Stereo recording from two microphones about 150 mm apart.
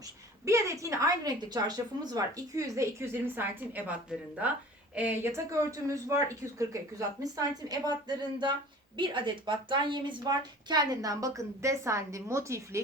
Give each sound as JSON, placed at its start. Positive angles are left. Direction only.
{"t": 0.0, "sound": "a woman's voice", "side_deg": -20}
{"t": 4.9, "sound": "a woman's voice", "side_deg": -15}